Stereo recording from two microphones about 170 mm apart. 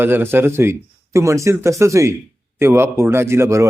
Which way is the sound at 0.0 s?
15° right (ahead or behind).